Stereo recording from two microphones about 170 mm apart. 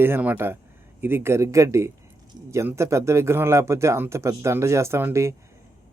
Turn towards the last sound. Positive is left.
turn(degrees=-15)  # may be behind; listen again after turning